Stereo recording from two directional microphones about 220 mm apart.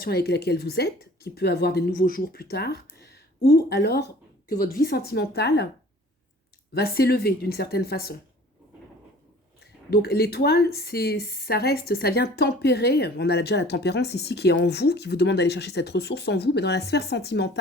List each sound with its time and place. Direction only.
0.0 s a woman's voice: 45° left (ahead or behind)
6.7 s a woman's voice: 45° left (ahead or behind)
9.9 s a woman's voice: 45° left (ahead or behind)